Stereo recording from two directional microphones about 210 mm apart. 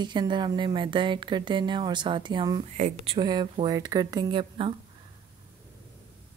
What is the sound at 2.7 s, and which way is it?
Speech, 30° right (ahead or behind).